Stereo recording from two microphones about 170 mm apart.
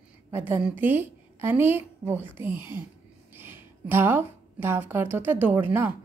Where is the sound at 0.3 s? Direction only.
10° right (ahead or behind).